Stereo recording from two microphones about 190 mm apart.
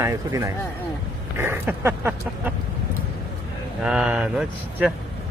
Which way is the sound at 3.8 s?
5° right (ahead or behind).